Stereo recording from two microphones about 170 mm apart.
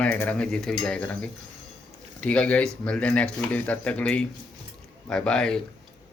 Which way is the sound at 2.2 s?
5° left (ahead or behind).